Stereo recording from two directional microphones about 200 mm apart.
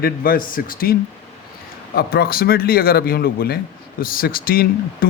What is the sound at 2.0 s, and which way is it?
A man's voice, 50° left (ahead or behind).